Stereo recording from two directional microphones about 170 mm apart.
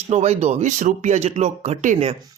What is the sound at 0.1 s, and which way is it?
Speech, 40° right (ahead or behind).